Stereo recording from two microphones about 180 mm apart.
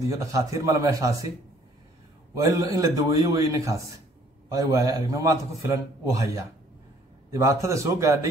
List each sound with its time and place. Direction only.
0.1 s a man's voice: 20° right (ahead or behind)
2.4 s a man's voice: 20° right (ahead or behind)